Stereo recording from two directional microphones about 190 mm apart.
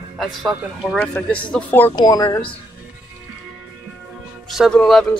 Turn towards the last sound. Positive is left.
turn(degrees=5)  # may be behind; listen again after turning